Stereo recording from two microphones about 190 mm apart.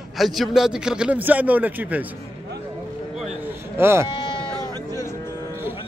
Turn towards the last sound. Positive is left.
turn(degrees=25)  # may be behind; listen again after turning